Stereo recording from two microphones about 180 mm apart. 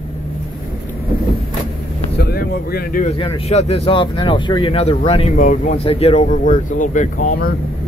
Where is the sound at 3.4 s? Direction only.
35° left (ahead or behind).